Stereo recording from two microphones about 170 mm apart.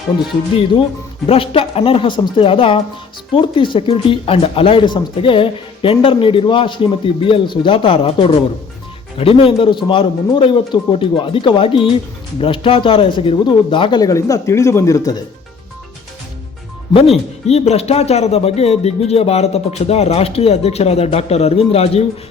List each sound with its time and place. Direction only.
1.3 s speech: 35° left (ahead or behind)
16.9 s speech: 35° left (ahead or behind)